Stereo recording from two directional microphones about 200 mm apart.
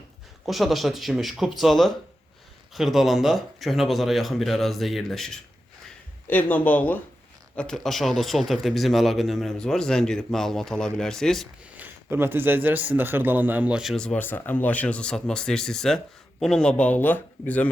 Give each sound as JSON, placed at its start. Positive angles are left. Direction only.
{"t": 0.4, "sound": "a man's voice", "side_deg": 0}
{"t": 12.1, "sound": "a man's voice", "side_deg": -10}